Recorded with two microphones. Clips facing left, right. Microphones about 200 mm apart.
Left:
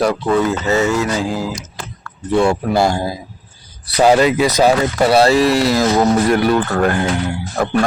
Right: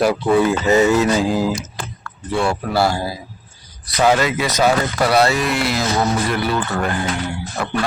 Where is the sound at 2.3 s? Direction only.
20° left (ahead or behind).